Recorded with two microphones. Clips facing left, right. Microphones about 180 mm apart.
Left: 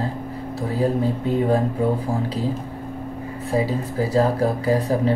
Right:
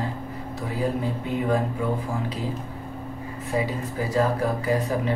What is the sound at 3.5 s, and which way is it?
Speech, 35° left (ahead or behind).